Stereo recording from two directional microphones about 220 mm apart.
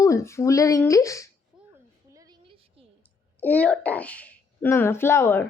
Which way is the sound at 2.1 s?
20° right (ahead or behind).